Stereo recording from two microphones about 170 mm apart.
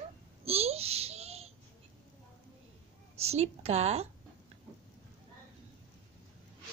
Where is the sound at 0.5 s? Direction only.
35° right (ahead or behind).